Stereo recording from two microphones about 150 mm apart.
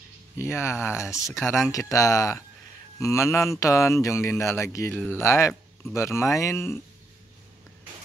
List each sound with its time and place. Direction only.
0.4 s speech: 15° left (ahead or behind)
1.4 s speech: centre (ahead or behind)
1.7 s speech: 20° left (ahead or behind)